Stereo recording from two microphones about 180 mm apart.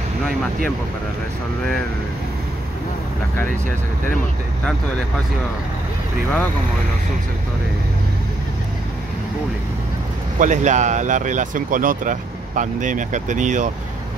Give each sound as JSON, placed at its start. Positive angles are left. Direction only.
{"t": 10.4, "sound": "speech", "side_deg": -40}